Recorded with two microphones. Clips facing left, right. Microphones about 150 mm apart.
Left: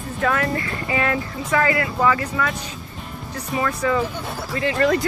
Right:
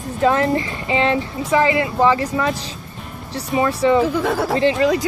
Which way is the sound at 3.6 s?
25° right (ahead or behind).